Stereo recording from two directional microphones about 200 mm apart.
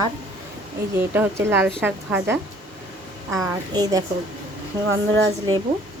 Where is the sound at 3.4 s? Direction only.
20° right (ahead or behind).